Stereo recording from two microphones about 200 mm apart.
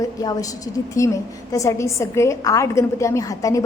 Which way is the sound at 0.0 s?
20° left (ahead or behind).